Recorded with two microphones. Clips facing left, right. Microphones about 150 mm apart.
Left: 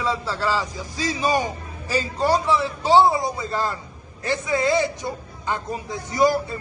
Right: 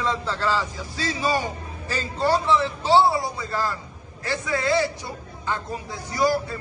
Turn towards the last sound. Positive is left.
turn(degrees=20)  # may be behind; listen again after turning